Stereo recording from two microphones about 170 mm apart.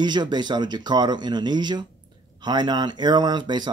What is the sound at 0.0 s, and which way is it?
Speech, 25° right (ahead or behind).